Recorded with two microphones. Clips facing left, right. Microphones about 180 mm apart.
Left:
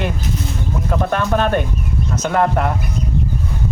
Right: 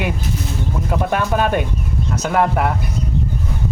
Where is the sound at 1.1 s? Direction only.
10° right (ahead or behind).